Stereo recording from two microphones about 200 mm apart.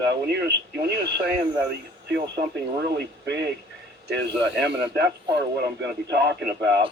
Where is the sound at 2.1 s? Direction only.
55° right (ahead or behind).